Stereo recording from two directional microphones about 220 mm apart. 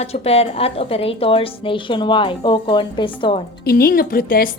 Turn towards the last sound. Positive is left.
turn(degrees=40)  # may be behind; listen again after turning